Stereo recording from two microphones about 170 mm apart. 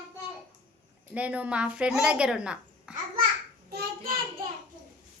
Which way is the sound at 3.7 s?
65° right (ahead or behind).